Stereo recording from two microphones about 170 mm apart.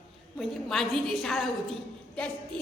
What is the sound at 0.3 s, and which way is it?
A woman's voice, centre (ahead or behind).